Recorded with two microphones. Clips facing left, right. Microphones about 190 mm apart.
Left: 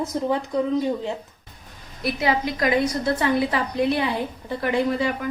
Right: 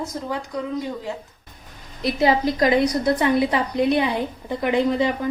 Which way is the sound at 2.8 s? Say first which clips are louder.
Right 3 dB; 15° right (ahead or behind).